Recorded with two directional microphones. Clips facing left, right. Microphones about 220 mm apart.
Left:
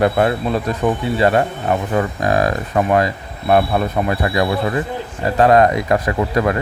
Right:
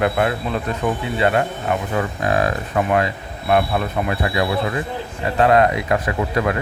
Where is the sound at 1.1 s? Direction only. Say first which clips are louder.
Left 3 dB; 40° left (ahead or behind).